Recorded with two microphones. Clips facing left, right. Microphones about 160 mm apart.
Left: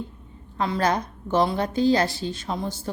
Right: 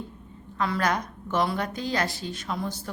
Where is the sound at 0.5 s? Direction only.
30° left (ahead or behind).